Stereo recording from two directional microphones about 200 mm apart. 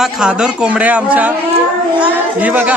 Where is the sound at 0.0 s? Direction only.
5° right (ahead or behind).